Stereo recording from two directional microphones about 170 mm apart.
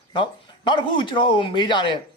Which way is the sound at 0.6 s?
25° left (ahead or behind).